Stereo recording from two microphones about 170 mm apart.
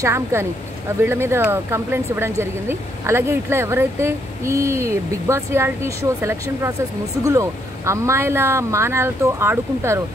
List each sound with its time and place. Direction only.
0.0 s speech: 15° right (ahead or behind)